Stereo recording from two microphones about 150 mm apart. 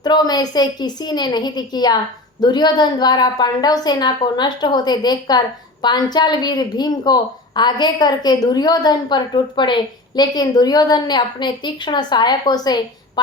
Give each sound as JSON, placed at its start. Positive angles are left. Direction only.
{"t": 0.0, "sound": "a woman's voice", "side_deg": 25}